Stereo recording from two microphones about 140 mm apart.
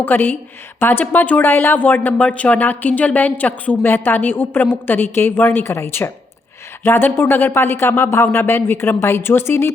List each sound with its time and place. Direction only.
0.0 s speech: 15° left (ahead or behind)